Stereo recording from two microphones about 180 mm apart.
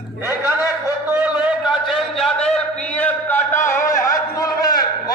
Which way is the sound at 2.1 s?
5° left (ahead or behind).